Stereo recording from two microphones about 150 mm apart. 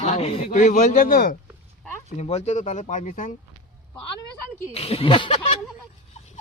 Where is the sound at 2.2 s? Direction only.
45° left (ahead or behind).